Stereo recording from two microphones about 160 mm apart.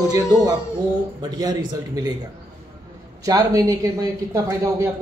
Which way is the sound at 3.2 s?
20° right (ahead or behind).